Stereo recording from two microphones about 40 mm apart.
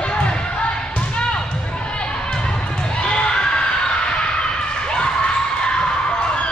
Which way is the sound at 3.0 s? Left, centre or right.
Left.